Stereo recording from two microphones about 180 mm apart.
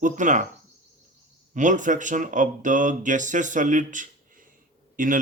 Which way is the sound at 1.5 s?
45° right (ahead or behind).